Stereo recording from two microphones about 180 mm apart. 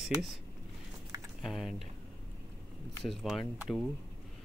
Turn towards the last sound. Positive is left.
turn(degrees=0)  # may be behind; listen again after turning